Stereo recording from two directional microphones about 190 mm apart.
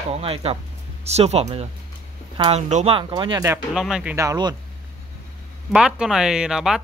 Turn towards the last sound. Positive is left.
turn(degrees=0)  # may be behind; listen again after turning